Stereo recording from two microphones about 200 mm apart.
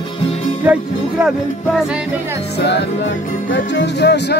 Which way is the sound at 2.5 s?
60° left (ahead or behind).